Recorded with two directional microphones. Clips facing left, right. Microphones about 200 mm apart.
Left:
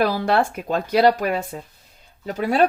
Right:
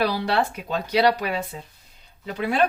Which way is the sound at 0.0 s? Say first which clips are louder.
Left 3 dB; 50° left (ahead or behind).